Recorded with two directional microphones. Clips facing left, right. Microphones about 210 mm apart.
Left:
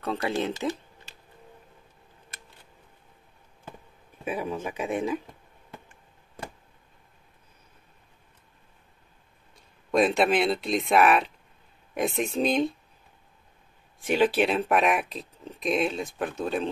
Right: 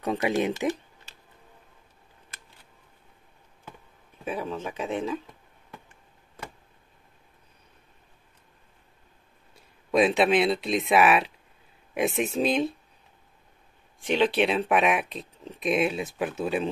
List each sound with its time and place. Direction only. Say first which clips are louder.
0.0 s speech: right 3 dB; 15° right (ahead or behind)
4.2 s speech: left 1 dB; 10° left (ahead or behind)
9.8 s speech: right 1 dB; centre (ahead or behind)
14.0 s speech: even; 5° left (ahead or behind)